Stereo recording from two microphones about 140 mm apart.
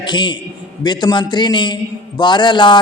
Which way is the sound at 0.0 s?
35° left (ahead or behind).